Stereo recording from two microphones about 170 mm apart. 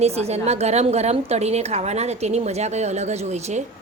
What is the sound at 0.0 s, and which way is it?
A woman's voice, 40° right (ahead or behind).